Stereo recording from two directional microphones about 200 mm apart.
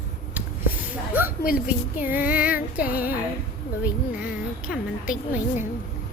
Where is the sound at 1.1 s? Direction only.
10° right (ahead or behind).